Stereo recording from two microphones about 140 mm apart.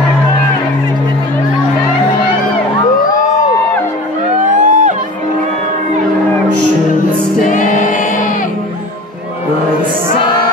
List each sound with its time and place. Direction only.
4.6 s music: 70° right (ahead or behind)
7.4 s choir: 65° left (ahead or behind)